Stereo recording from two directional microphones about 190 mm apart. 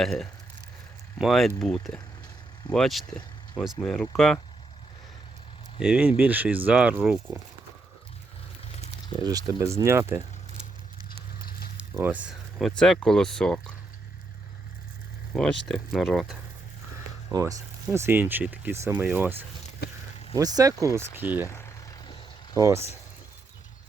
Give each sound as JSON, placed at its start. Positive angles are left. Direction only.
{"t": 0.0, "sound": "speech", "side_deg": 0}
{"t": 5.8, "sound": "speech", "side_deg": -5}
{"t": 9.2, "sound": "speech", "side_deg": -20}
{"t": 11.8, "sound": "speech", "side_deg": -10}
{"t": 15.4, "sound": "speech", "side_deg": 5}
{"t": 17.3, "sound": "speech", "side_deg": -15}
{"t": 19.8, "sound": "a sound", "side_deg": 55}
{"t": 20.3, "sound": "speech", "side_deg": -20}
{"t": 21.4, "sound": "vehicle", "side_deg": 15}
{"t": 22.5, "sound": "speech", "side_deg": -15}